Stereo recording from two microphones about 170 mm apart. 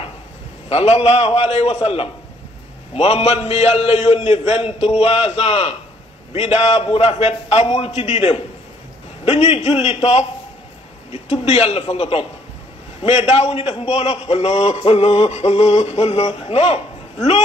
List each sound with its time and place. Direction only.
0.7 s a man's voice: 40° left (ahead or behind)